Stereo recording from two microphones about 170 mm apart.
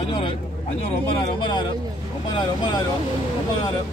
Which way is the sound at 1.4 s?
25° left (ahead or behind).